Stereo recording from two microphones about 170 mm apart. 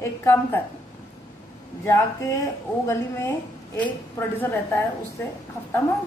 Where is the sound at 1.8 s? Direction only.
15° left (ahead or behind).